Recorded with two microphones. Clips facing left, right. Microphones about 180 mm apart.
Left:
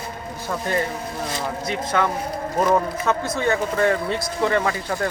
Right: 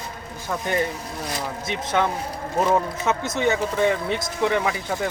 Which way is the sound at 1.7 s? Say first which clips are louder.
Even; 20° right (ahead or behind).